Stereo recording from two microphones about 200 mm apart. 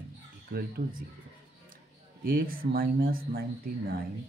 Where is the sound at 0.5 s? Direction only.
55° right (ahead or behind).